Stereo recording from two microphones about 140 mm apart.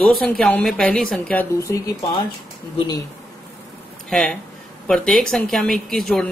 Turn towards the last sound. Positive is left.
turn(degrees=0)  # may be behind; listen again after turning